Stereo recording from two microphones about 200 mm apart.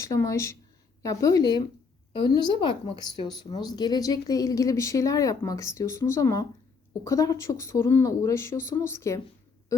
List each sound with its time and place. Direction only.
0.0 s speech: 15° left (ahead or behind)